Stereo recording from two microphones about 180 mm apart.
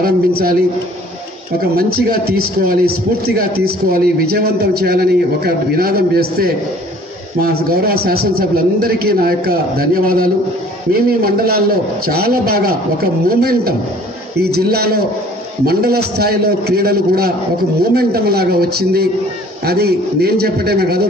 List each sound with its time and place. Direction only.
0.0 s a man's voice: 55° right (ahead or behind)
1.8 s a man's voice: 55° right (ahead or behind)
3.9 s a man's voice: 60° right (ahead or behind)